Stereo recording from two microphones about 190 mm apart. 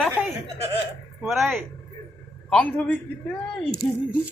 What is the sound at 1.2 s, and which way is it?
Speech, centre (ahead or behind).